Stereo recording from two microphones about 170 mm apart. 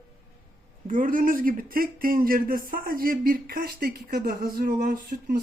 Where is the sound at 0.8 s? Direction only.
50° right (ahead or behind).